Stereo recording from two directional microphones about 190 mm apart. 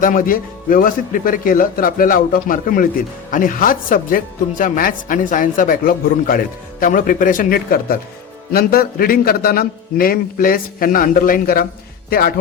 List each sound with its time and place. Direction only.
0.0 s speech: 45° left (ahead or behind)